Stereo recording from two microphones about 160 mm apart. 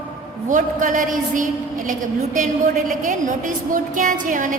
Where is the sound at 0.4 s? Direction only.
55° right (ahead or behind).